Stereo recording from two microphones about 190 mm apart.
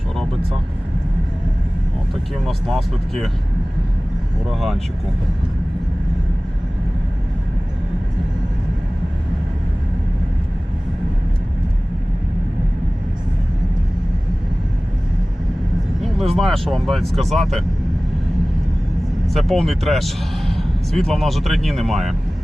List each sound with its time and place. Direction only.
2.4 s a man's voice: centre (ahead or behind)
4.5 s a man's voice: centre (ahead or behind)
16.0 s a man's voice: centre (ahead or behind)
19.3 s a man's voice: centre (ahead or behind)